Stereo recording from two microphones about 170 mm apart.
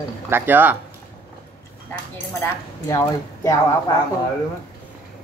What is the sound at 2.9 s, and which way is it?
Speech, 20° left (ahead or behind).